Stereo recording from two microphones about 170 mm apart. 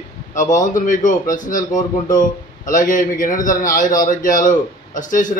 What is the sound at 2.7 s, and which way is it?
A man's voice, 50° left (ahead or behind).